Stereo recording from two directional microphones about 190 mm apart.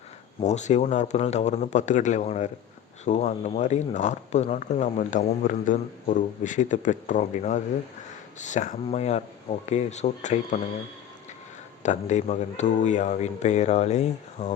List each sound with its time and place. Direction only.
0.3 s speech: 35° left (ahead or behind)
11.8 s speech: 40° left (ahead or behind)